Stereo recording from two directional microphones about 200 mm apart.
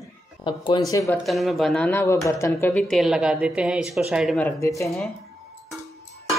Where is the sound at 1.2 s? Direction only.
Centre (ahead or behind).